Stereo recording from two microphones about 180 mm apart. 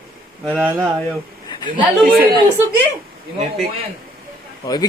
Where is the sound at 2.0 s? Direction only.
55° right (ahead or behind).